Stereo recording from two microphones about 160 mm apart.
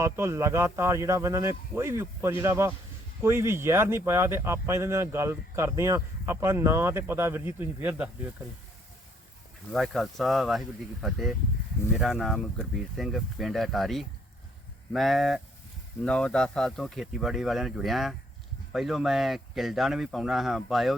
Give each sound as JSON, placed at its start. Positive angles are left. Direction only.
{"t": 0.0, "sound": "speech", "side_deg": -15}
{"t": 9.7, "sound": "speech", "side_deg": 0}